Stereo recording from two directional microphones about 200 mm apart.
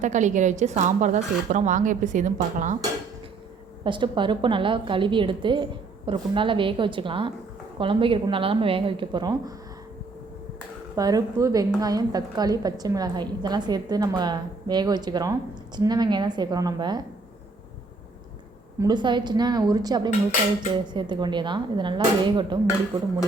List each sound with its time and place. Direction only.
0.0 s speech: 35° right (ahead or behind)
3.8 s a woman's voice: 25° right (ahead or behind)
10.9 s a woman's voice: 20° right (ahead or behind)
18.8 s a woman's voice: 20° right (ahead or behind)